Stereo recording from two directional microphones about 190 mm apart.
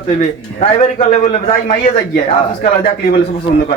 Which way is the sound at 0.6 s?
35° left (ahead or behind).